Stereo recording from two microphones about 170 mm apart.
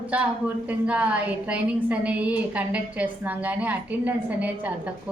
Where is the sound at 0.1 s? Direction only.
10° right (ahead or behind).